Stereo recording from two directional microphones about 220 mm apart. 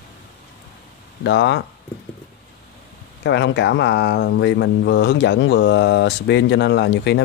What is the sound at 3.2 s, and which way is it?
Speech, 50° left (ahead or behind).